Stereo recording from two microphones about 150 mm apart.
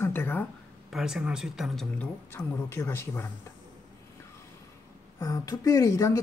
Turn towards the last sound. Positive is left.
turn(degrees=20)  # may be behind; listen again after turning